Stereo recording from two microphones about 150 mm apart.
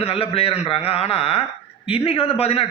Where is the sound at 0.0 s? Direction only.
40° left (ahead or behind).